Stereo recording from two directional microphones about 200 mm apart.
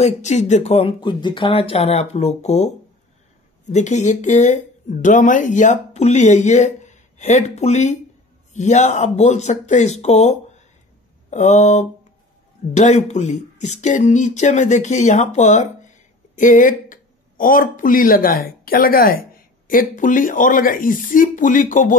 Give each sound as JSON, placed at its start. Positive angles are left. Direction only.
{"t": 0.0, "sound": "speech", "side_deg": 35}